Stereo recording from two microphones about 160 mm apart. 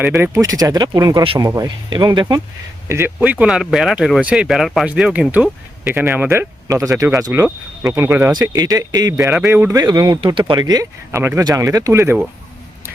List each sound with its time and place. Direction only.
0.0 s speech: 15° right (ahead or behind)
2.9 s speech: 15° right (ahead or behind)